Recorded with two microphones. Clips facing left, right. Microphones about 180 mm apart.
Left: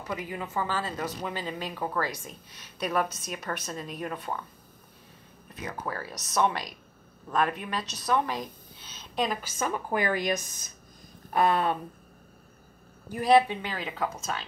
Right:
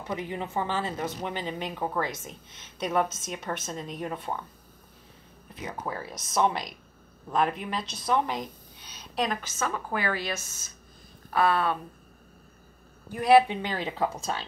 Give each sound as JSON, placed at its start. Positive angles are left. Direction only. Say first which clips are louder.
{"t": 0.1, "sound": "a woman's voice", "louder": "right 2 dB", "side_deg": -25}
{"t": 5.5, "sound": "a woman's voice", "louder": "even", "side_deg": -25}
{"t": 9.1, "sound": "a woman's voice", "louder": "even", "side_deg": 0}
{"t": 9.6, "sound": "a woman's voice", "louder": "left 3 dB", "side_deg": 15}
{"t": 13.2, "sound": "speech", "louder": "right 2 dB", "side_deg": -5}
{"t": 13.5, "sound": "a woman's voice", "louder": "right 3 dB", "side_deg": -25}